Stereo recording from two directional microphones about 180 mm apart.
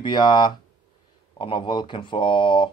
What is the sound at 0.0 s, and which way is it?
Speech, 25° left (ahead or behind).